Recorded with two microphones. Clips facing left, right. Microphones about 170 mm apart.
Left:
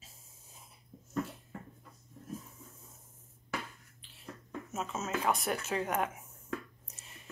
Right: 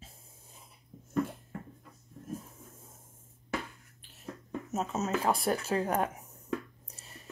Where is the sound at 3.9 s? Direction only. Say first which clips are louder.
Right 2 dB; 45° right (ahead or behind).